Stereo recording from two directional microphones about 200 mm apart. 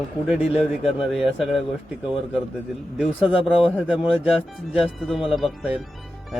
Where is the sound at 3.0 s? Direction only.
5° right (ahead or behind).